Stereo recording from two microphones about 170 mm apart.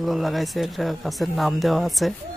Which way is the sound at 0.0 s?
Centre (ahead or behind).